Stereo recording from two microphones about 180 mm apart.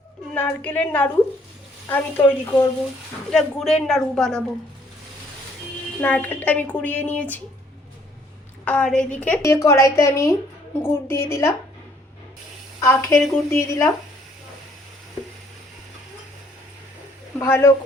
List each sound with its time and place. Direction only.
0.3 s a woman's voice: 10° left (ahead or behind)
6.0 s a woman's voice: 10° left (ahead or behind)
8.6 s a woman's voice: 5° left (ahead or behind)
12.8 s a woman's voice: 15° left (ahead or behind)
17.4 s a woman's voice: 15° left (ahead or behind)